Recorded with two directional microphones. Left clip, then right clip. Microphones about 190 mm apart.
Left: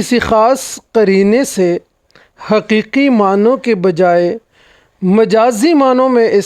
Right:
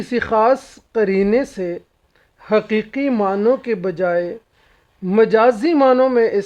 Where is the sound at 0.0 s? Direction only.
50° left (ahead or behind).